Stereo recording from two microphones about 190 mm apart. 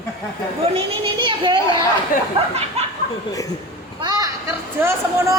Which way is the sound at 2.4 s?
30° right (ahead or behind).